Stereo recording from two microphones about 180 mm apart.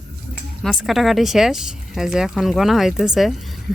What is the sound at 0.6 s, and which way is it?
Speech, centre (ahead or behind).